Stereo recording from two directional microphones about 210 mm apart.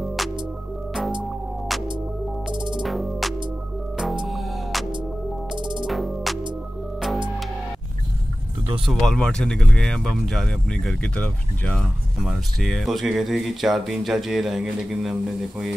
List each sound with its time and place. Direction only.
1.7 s music: centre (ahead or behind)
2.5 s music: 20° right (ahead or behind)
2.8 s music: centre (ahead or behind)
5.6 s music: 20° right (ahead or behind)
5.9 s music: centre (ahead or behind)
8.8 s speech: 5° left (ahead or behind)